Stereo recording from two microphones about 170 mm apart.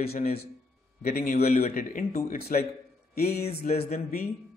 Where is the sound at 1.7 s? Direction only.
55° left (ahead or behind).